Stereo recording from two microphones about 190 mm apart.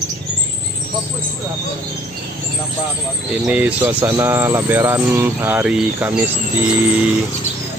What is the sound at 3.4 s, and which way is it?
Speech, 5° right (ahead or behind).